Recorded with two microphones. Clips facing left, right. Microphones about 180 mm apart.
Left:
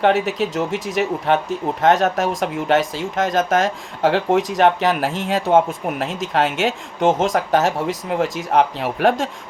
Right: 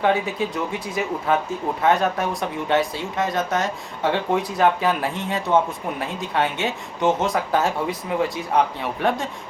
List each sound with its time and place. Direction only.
0.0 s speech: 75° left (ahead or behind)